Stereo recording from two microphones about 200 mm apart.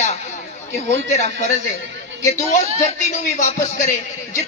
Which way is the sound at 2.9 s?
35° left (ahead or behind).